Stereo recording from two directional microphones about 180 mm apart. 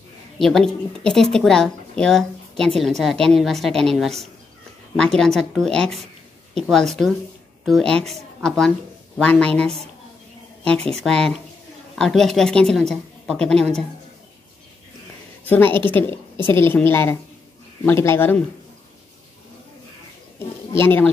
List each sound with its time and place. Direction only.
0.4 s a woman's voice: centre (ahead or behind)
15.4 s a woman's voice: 10° left (ahead or behind)
20.7 s a woman's voice: 10° left (ahead or behind)